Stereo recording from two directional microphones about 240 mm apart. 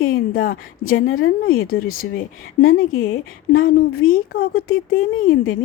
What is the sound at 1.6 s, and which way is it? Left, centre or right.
A woman's voice, left.